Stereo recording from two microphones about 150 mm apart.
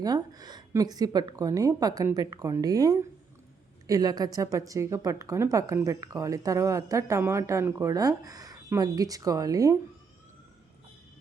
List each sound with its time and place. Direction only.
0.0 s a woman's voice: 25° right (ahead or behind)